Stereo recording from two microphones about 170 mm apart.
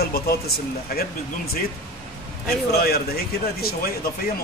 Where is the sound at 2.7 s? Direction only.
65° left (ahead or behind).